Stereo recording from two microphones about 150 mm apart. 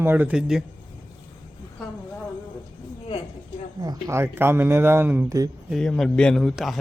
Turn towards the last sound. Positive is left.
turn(degrees=0)  # may be behind; listen again after turning